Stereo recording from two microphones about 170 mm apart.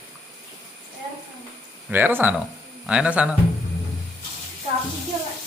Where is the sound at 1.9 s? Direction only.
10° right (ahead or behind).